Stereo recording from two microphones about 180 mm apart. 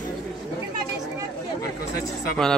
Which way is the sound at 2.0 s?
Centre (ahead or behind).